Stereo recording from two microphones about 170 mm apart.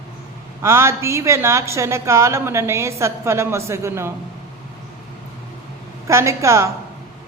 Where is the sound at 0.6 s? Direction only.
15° right (ahead or behind).